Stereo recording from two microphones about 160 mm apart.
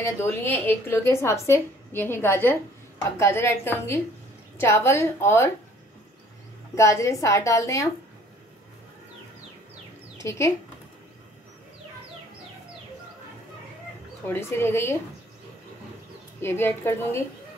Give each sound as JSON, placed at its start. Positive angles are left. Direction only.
{"t": 0.0, "sound": "speech", "side_deg": 15}
{"t": 6.7, "sound": "a woman's voice", "side_deg": 20}
{"t": 10.1, "sound": "speech", "side_deg": 20}
{"t": 14.2, "sound": "speech", "side_deg": 15}
{"t": 16.3, "sound": "speech", "side_deg": 15}